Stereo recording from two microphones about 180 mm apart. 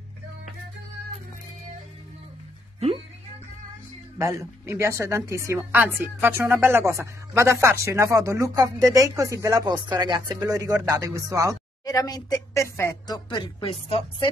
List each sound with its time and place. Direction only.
4.2 s a woman's voice: 15° right (ahead or behind)
11.8 s speech: 20° left (ahead or behind)